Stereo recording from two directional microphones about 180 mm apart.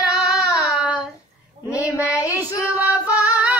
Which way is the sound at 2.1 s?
15° left (ahead or behind).